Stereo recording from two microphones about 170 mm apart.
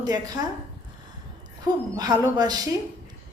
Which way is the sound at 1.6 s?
25° right (ahead or behind).